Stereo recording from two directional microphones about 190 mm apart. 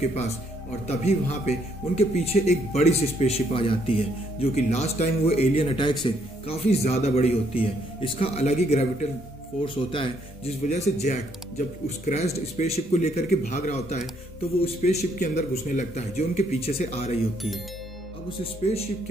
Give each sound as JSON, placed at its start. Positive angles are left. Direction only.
{"t": 0.8, "sound": "speech", "side_deg": 35}
{"t": 9.8, "sound": "speech", "side_deg": 30}
{"t": 18.4, "sound": "speech", "side_deg": 30}